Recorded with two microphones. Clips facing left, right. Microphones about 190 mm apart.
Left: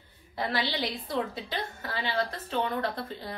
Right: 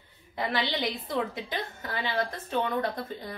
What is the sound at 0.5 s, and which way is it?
Speech, 20° right (ahead or behind).